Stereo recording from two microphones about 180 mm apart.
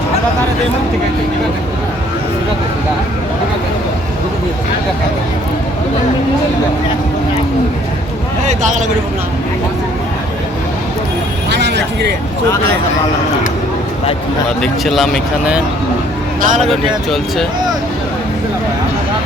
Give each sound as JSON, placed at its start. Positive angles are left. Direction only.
{"t": 8.4, "sound": "speech", "side_deg": -40}
{"t": 11.5, "sound": "vehicle", "side_deg": -70}
{"t": 14.6, "sound": "speech", "side_deg": 0}
{"t": 16.4, "sound": "speech", "side_deg": -45}